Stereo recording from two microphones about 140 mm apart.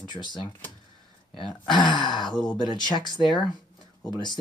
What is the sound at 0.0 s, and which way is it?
Speech, 30° left (ahead or behind).